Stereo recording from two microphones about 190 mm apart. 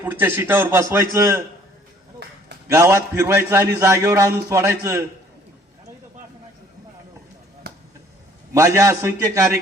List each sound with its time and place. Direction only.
0.0 s a man's voice: 10° right (ahead or behind)
2.6 s a man's voice: 15° right (ahead or behind)
7.6 s a sound: 55° right (ahead or behind)
8.5 s a man's voice: 15° right (ahead or behind)